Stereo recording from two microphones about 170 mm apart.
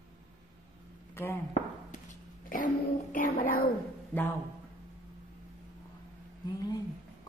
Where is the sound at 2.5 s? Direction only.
50° left (ahead or behind).